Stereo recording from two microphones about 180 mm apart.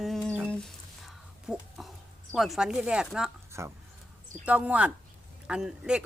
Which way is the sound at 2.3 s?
Centre (ahead or behind).